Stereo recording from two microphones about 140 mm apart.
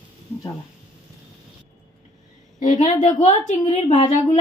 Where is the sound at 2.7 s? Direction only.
60° left (ahead or behind).